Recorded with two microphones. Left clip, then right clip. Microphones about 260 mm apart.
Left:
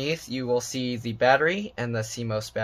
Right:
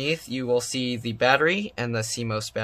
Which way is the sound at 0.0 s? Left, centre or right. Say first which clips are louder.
Right 2 dB; centre.